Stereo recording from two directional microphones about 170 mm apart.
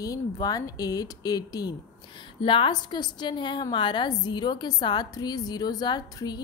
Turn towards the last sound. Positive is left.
turn(degrees=25)  # may be behind; listen again after turning